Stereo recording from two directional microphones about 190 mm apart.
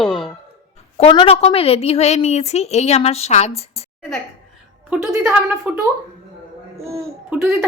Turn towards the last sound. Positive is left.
turn(degrees=-10)  # may be behind; listen again after turning